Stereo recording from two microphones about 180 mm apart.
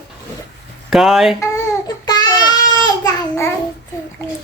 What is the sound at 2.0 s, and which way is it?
Child singing, 25° left (ahead or behind).